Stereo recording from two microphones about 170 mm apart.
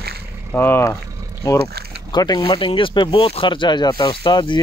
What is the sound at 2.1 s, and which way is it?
Speech, 25° left (ahead or behind).